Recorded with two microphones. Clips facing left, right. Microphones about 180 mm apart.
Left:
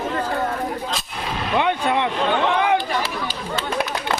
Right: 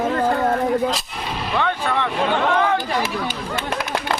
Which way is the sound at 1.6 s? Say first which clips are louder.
Left 2 dB; 15° left (ahead or behind).